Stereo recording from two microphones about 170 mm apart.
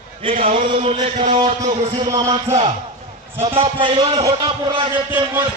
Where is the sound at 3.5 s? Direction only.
30° right (ahead or behind).